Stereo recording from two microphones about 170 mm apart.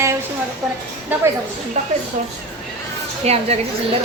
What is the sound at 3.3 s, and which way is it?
Speech, 35° right (ahead or behind).